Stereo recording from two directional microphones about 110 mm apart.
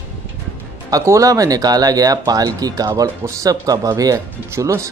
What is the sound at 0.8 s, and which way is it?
Speech, 30° right (ahead or behind).